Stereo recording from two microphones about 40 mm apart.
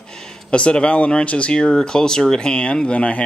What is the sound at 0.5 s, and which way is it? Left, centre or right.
Speech, left.